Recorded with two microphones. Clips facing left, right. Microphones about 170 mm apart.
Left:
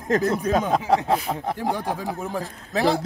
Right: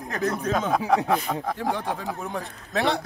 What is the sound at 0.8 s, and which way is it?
Speech, 30° left (ahead or behind).